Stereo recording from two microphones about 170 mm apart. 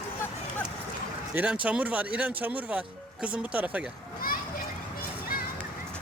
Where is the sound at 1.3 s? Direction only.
10° right (ahead or behind).